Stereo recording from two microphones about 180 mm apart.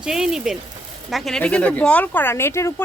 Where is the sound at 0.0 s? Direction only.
5° right (ahead or behind).